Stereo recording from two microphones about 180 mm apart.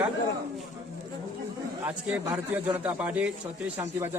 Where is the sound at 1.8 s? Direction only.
10° right (ahead or behind).